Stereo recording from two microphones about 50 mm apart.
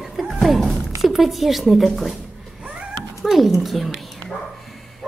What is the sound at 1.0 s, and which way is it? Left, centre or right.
Speech, centre.